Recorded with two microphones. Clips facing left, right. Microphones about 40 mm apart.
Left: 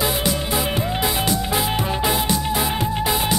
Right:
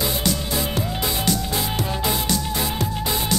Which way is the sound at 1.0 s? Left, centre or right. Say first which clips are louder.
Left 2 dB; centre.